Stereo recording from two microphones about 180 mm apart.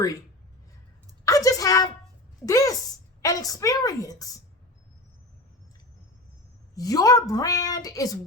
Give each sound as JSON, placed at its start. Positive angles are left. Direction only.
{"t": 1.2, "sound": "a woman's voice", "side_deg": 20}
{"t": 6.7, "sound": "a woman's voice", "side_deg": 20}